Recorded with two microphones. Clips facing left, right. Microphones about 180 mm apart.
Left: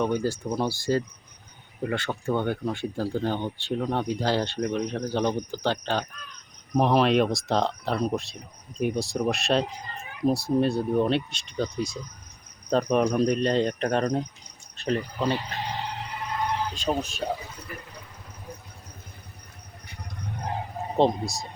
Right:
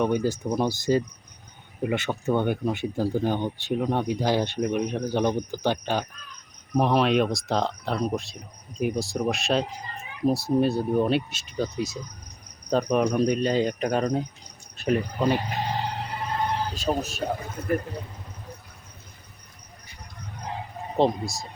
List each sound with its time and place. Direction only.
0.0 s speech: 15° right (ahead or behind)
6.7 s speech: centre (ahead or behind)
16.1 s a sound: 35° right (ahead or behind)
17.0 s speech: 5° right (ahead or behind)
17.3 s speech: 50° right (ahead or behind)
21.0 s speech: centre (ahead or behind)